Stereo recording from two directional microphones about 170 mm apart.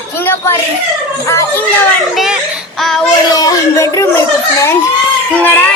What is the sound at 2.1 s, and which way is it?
Speech, centre (ahead or behind).